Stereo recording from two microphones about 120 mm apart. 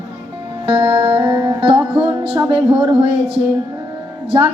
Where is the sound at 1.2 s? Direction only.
30° right (ahead or behind).